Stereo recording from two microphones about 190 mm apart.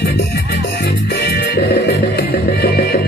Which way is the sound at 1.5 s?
60° left (ahead or behind).